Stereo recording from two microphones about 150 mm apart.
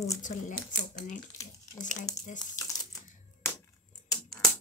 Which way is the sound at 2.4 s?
25° left (ahead or behind).